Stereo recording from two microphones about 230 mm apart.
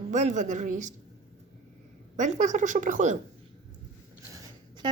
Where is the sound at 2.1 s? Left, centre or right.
Right.